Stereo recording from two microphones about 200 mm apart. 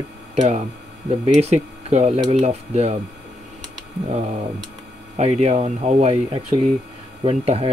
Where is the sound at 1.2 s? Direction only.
30° right (ahead or behind).